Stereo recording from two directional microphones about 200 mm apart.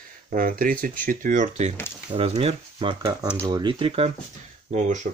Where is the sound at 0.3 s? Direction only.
45° right (ahead or behind).